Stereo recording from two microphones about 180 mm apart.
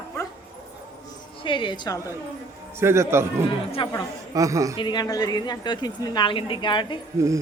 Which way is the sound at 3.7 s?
25° left (ahead or behind).